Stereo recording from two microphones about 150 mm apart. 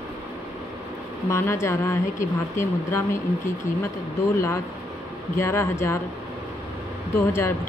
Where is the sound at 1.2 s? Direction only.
20° left (ahead or behind).